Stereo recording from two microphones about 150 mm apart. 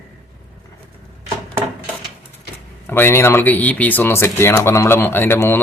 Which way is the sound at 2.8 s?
15° left (ahead or behind).